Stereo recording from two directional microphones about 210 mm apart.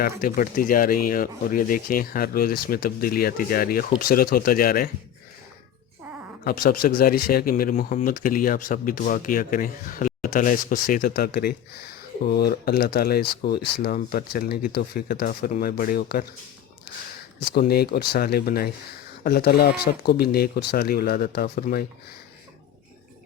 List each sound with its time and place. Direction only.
0.2 s speech: 40° left (ahead or behind)
6.4 s speech: 45° left (ahead or behind)
17.5 s speech: 50° left (ahead or behind)